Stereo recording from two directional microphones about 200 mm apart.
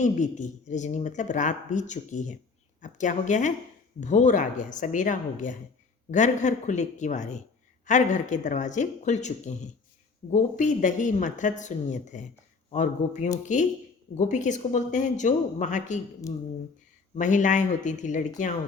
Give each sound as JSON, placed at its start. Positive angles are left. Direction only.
{"t": 0.0, "sound": "speech", "side_deg": 35}
{"t": 17.2, "sound": "speech", "side_deg": 40}